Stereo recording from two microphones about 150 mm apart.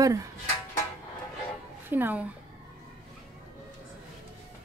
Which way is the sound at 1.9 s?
10° right (ahead or behind).